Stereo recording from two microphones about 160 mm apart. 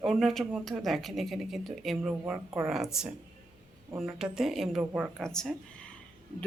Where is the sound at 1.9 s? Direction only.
10° right (ahead or behind).